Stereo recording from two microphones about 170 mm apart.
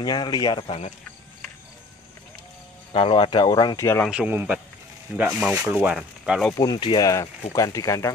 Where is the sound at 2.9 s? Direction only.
30° left (ahead or behind).